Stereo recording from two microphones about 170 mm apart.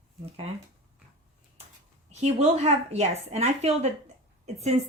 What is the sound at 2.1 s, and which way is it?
Speech, 40° right (ahead or behind).